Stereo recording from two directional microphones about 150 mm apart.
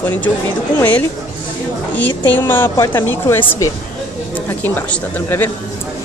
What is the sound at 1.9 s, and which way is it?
A woman's voice, 10° left (ahead or behind).